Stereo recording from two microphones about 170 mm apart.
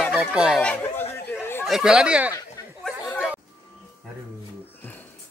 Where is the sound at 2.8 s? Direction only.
Centre (ahead or behind).